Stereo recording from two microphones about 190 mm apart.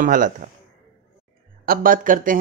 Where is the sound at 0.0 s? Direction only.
45° right (ahead or behind).